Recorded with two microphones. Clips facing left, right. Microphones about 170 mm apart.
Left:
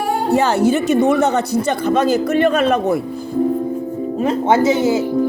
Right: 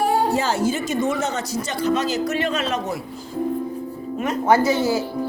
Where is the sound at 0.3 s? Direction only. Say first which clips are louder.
Left 6 dB; 65° left (ahead or behind).